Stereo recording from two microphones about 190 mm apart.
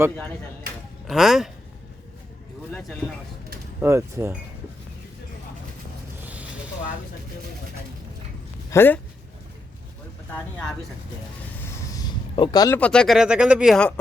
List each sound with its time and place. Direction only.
1.0 s speech: centre (ahead or behind)
3.8 s speech: 15° right (ahead or behind)
6.2 s vehicle: 5° right (ahead or behind)
8.7 s speech: 10° left (ahead or behind)
11.6 s a sound: 15° left (ahead or behind)
12.8 s speech: 5° left (ahead or behind)